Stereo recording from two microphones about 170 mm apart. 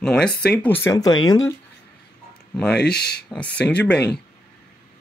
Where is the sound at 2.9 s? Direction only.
70° left (ahead or behind).